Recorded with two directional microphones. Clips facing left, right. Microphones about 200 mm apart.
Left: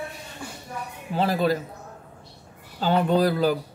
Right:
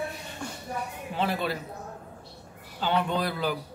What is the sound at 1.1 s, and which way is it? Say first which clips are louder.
Speech: left 7 dB; 40° left (ahead or behind).